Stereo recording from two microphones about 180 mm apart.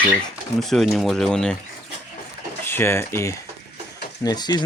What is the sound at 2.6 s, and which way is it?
Speech, 15° left (ahead or behind).